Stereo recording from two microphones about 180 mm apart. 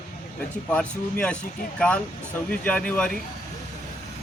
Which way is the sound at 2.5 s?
5° left (ahead or behind).